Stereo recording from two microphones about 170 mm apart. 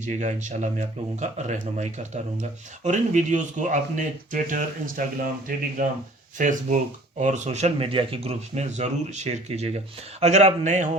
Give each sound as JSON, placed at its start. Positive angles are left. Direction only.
{"t": 0.0, "sound": "speech", "side_deg": -45}